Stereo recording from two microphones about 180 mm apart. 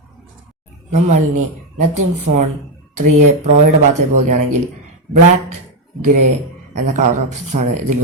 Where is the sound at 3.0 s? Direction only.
40° right (ahead or behind).